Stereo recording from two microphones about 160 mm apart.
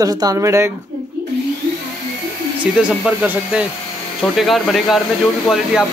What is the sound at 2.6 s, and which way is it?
Speech, 10° right (ahead or behind).